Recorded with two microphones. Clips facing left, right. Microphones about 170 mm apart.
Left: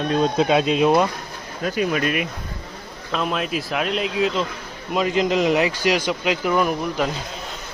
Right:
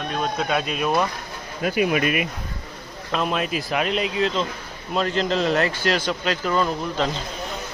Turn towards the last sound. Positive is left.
turn(degrees=10)  # may be behind; listen again after turning